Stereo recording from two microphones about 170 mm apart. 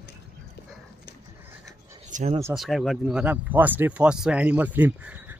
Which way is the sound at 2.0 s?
45° right (ahead or behind).